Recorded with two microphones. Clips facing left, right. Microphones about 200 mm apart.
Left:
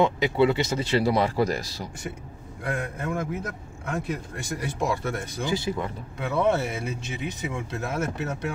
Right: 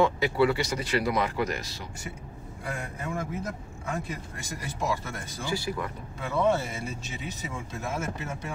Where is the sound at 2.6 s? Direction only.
60° left (ahead or behind).